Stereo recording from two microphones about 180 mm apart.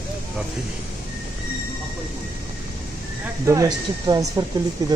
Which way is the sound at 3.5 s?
20° right (ahead or behind).